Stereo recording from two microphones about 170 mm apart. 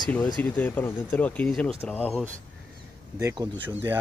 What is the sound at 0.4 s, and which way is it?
Speech, 10° left (ahead or behind).